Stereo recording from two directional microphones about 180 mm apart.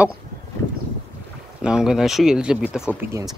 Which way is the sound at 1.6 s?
5° right (ahead or behind).